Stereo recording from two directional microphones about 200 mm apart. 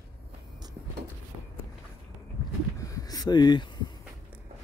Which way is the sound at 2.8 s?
15° left (ahead or behind).